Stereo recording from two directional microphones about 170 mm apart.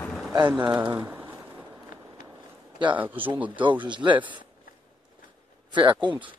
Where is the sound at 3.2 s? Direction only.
10° right (ahead or behind).